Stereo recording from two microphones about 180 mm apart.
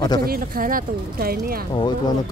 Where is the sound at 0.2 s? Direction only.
55° right (ahead or behind).